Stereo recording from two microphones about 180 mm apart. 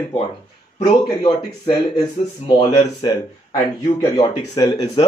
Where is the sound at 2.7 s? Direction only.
25° left (ahead or behind).